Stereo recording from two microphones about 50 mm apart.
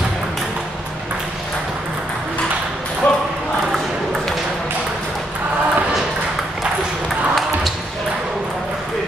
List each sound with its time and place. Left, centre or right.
3.0 s ping: left